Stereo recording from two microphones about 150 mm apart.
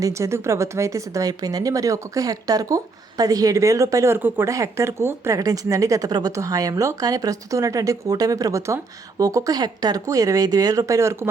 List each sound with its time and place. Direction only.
0.0 s speech: 20° right (ahead or behind)